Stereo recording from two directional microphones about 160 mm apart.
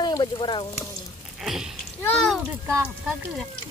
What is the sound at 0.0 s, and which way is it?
Speech, 25° left (ahead or behind).